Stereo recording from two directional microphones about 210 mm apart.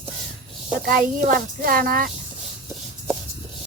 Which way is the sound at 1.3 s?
40° right (ahead or behind).